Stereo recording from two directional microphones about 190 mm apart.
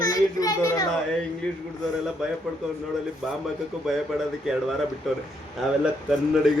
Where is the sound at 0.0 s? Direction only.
20° left (ahead or behind).